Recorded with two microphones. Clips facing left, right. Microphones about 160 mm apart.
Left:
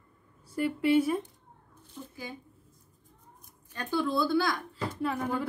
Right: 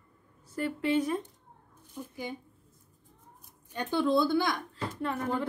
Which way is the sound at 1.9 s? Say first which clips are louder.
Right 3 dB; 20° right (ahead or behind).